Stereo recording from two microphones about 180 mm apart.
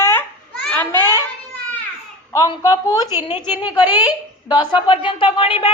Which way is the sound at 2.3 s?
20° left (ahead or behind).